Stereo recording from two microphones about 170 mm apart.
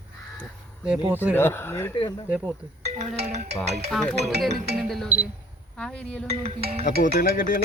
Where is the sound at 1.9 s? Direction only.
30° left (ahead or behind).